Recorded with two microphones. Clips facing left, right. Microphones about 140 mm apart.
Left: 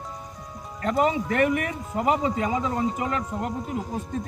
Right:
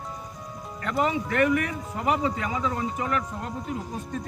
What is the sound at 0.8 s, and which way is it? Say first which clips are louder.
A man's voice: left 3 dB; 30° left (ahead or behind).